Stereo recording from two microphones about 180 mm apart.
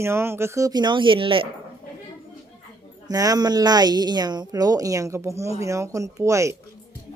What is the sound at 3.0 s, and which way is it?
Speech, 20° right (ahead or behind).